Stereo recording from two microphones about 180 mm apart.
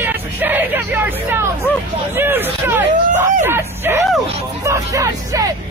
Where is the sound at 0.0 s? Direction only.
10° right (ahead or behind).